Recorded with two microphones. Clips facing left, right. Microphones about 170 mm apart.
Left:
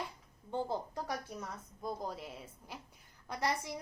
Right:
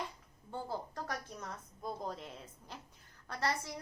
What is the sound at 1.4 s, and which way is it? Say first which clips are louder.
A woman's voice: left 1 dB; 5° left (ahead or behind).